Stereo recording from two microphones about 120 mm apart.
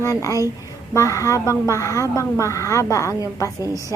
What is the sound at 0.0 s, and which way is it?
A woman's voice, 30° left (ahead or behind).